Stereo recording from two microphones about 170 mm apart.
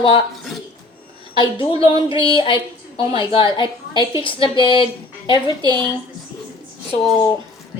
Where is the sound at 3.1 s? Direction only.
30° left (ahead or behind).